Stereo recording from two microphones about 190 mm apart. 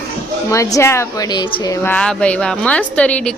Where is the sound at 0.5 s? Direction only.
15° left (ahead or behind).